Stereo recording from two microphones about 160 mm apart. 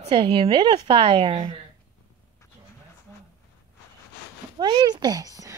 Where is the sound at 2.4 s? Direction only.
20° left (ahead or behind).